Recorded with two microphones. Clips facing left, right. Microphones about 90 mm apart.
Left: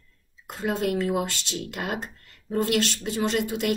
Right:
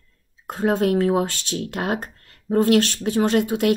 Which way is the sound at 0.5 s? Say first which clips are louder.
Right 6 dB; 50° right (ahead or behind).